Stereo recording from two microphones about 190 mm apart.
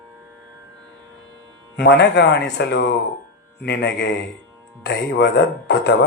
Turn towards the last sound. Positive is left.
turn(degrees=65)  # may be behind; listen again after turning